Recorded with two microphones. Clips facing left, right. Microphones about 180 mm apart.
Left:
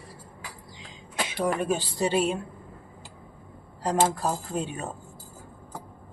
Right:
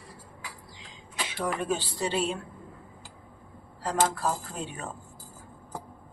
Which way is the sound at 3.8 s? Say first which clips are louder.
Left 3 dB; 20° left (ahead or behind).